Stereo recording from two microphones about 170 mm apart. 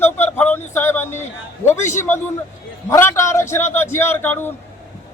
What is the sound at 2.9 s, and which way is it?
Speech, 15° left (ahead or behind).